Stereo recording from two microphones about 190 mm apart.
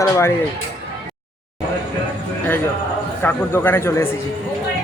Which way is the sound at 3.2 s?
10° left (ahead or behind).